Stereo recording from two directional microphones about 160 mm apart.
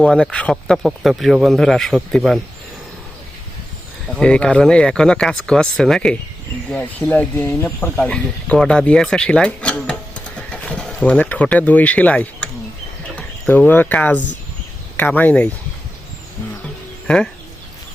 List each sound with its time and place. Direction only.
0.0 s speech: 5° left (ahead or behind)
4.1 s speech: 5° left (ahead or behind)